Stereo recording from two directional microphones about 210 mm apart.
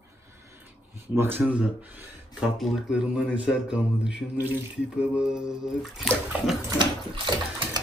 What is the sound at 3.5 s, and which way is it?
Speech, 5° right (ahead or behind).